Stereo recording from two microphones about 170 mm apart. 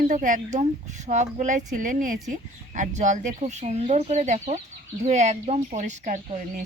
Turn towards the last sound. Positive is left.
turn(degrees=-45)  # may be behind; listen again after turning